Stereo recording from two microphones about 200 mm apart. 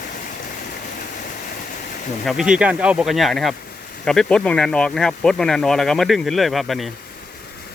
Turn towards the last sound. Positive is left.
turn(degrees=0)  # may be behind; listen again after turning